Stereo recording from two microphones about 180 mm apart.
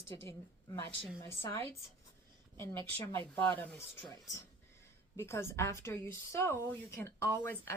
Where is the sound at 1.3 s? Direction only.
15° left (ahead or behind).